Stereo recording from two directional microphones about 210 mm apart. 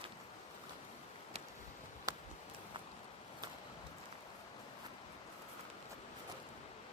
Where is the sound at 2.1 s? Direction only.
20° right (ahead or behind).